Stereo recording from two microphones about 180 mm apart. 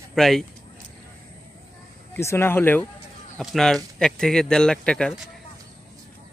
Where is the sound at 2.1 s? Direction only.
15° left (ahead or behind).